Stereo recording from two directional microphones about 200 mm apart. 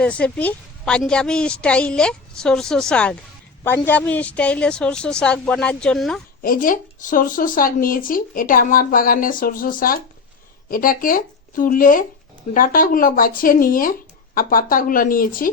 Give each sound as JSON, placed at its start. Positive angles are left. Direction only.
{"t": 0.0, "sound": "a woman's voice", "side_deg": 5}
{"t": 6.4, "sound": "speech", "side_deg": 45}